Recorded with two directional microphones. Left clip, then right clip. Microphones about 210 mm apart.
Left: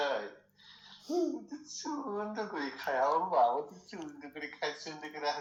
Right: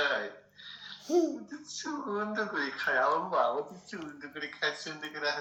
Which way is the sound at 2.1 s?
30° right (ahead or behind).